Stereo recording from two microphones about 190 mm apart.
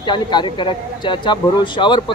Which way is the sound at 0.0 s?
25° left (ahead or behind).